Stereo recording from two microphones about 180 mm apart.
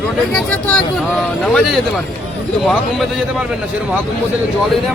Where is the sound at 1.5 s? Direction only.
Centre (ahead or behind).